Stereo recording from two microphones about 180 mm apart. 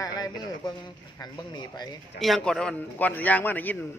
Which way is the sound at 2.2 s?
Centre (ahead or behind).